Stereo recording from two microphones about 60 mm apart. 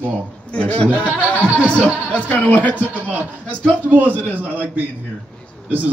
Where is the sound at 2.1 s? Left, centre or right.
Left.